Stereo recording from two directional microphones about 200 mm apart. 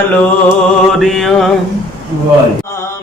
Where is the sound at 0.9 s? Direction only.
Centre (ahead or behind).